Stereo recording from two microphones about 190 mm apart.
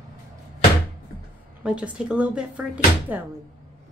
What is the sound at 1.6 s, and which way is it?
A woman's voice, 5° right (ahead or behind).